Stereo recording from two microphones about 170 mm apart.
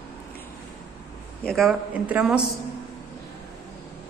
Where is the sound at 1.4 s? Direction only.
Centre (ahead or behind).